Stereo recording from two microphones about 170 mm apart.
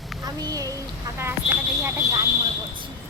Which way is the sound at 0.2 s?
20° right (ahead or behind).